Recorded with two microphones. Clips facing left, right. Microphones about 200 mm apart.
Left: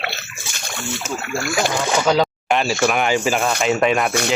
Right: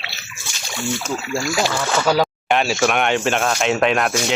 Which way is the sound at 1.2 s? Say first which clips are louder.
Right 1 dB; 55° left (ahead or behind).